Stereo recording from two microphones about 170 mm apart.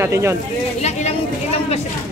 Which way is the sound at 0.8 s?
40° left (ahead or behind).